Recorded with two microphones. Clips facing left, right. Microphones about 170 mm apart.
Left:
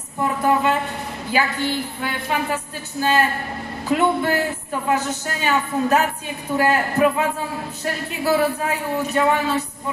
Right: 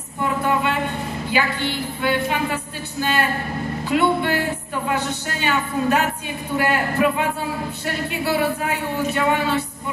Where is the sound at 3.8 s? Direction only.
40° left (ahead or behind).